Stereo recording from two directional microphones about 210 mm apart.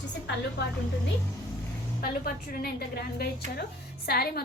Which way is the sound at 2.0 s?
45° left (ahead or behind).